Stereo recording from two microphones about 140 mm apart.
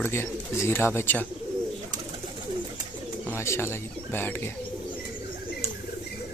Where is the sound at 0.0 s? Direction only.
15° left (ahead or behind).